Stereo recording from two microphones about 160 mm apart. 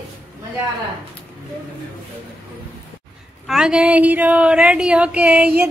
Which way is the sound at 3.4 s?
5° right (ahead or behind).